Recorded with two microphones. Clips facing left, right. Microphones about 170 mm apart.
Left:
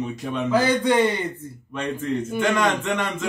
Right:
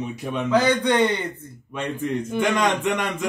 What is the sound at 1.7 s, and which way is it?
Speech, 15° right (ahead or behind).